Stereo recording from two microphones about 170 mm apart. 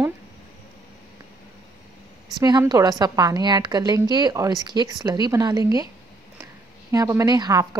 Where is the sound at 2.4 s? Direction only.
25° right (ahead or behind).